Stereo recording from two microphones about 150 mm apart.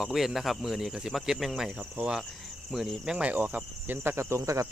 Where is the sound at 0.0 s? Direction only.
Centre (ahead or behind).